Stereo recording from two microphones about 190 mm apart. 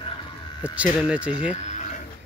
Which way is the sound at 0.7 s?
5° right (ahead or behind).